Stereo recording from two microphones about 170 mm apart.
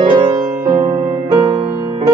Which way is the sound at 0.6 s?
45° right (ahead or behind).